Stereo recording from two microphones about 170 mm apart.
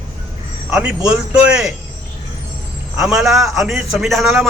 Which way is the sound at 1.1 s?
5° right (ahead or behind).